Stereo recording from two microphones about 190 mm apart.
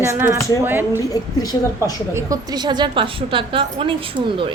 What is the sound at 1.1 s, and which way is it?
Speech, 20° left (ahead or behind).